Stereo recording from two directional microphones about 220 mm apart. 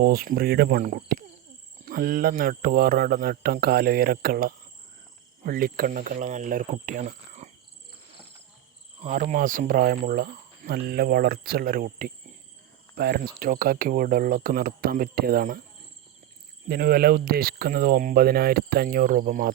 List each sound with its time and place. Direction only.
0.0 s speech: 40° right (ahead or behind)
9.0 s speech: 30° right (ahead or behind)
16.6 s speech: 45° right (ahead or behind)